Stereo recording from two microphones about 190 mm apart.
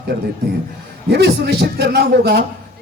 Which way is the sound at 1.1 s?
60° right (ahead or behind).